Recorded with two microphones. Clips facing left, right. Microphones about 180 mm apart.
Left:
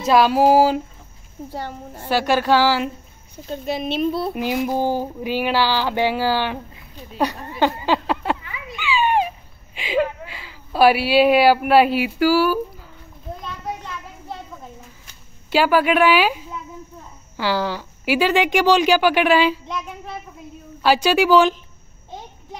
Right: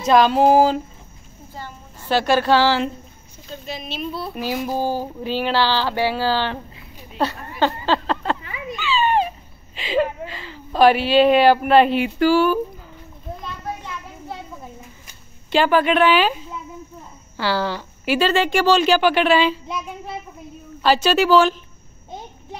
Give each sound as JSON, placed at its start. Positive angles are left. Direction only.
{"t": 0.0, "sound": "a woman's voice", "side_deg": 5}
{"t": 1.5, "sound": "a woman's voice", "side_deg": 70}
{"t": 2.0, "sound": "a woman's voice", "side_deg": 15}
{"t": 3.4, "sound": "speech", "side_deg": 55}
{"t": 4.1, "sound": "a woman's voice", "side_deg": 25}
{"t": 7.2, "sound": "a sound", "side_deg": 15}
{"t": 10.2, "sound": "speech", "side_deg": 10}
{"t": 15.5, "sound": "a woman's voice", "side_deg": 10}
{"t": 20.8, "sound": "a woman's voice", "side_deg": 10}